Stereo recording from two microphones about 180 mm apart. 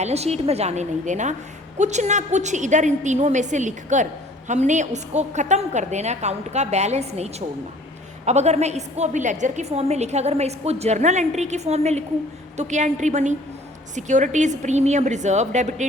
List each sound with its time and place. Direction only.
0.0 s a woman's voice: 35° right (ahead or behind)